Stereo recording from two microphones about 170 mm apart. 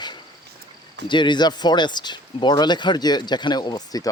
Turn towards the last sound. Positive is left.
turn(degrees=20)  # may be behind; listen again after turning